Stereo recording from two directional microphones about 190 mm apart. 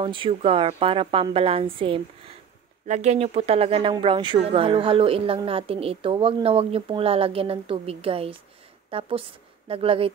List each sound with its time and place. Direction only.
0.0 s a woman's voice: 25° right (ahead or behind)